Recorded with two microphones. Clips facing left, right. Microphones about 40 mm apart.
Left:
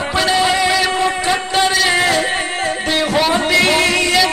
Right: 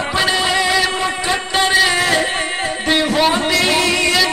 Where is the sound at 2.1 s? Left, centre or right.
Centre.